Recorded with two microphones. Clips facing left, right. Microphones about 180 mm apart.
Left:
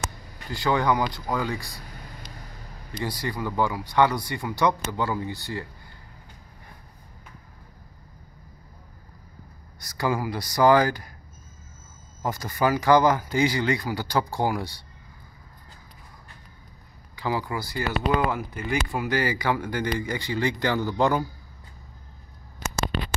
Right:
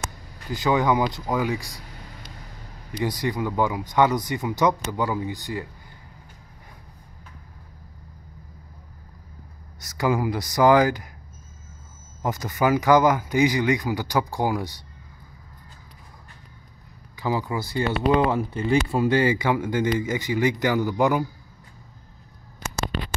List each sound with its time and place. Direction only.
0.5 s speech: 15° right (ahead or behind)
1.4 s speech: centre (ahead or behind)
3.0 s speech: 20° right (ahead or behind)
9.8 s speech: 20° right (ahead or behind)
12.2 s speech: 20° right (ahead or behind)
17.1 s speech: 20° right (ahead or behind)